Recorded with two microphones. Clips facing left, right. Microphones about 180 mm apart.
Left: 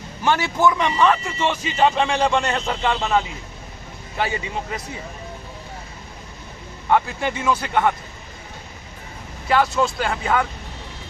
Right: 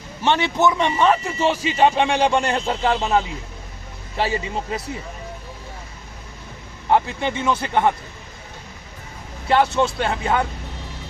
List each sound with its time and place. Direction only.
0.3 s a man's voice: 25° right (ahead or behind)
6.9 s a man's voice: 25° right (ahead or behind)
9.5 s a man's voice: 25° right (ahead or behind)